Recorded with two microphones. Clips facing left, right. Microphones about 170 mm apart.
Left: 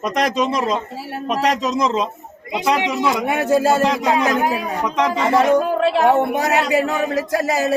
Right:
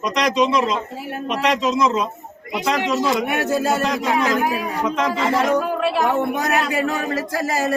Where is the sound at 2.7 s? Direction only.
20° left (ahead or behind).